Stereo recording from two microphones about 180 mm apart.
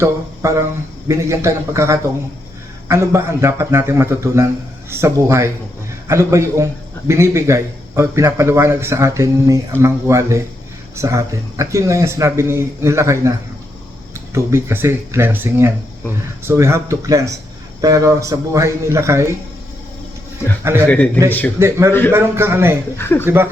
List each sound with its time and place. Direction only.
0.0 s a man's voice: 15° right (ahead or behind)
20.8 s speech: 10° left (ahead or behind)
21.6 s a man's voice: 15° right (ahead or behind)
23.0 s speech: 15° left (ahead or behind)
23.2 s a man's voice: 15° right (ahead or behind)